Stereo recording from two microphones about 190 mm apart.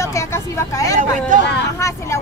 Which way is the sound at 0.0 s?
15° left (ahead or behind).